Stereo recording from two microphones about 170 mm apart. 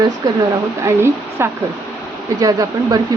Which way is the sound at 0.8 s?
15° right (ahead or behind).